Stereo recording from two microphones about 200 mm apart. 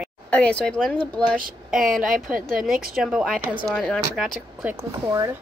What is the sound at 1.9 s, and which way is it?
Speech, 45° right (ahead or behind).